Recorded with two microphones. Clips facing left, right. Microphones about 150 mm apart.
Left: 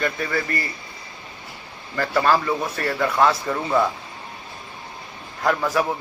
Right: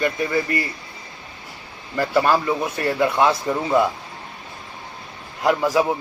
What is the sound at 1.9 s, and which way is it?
A man's voice, 15° right (ahead or behind).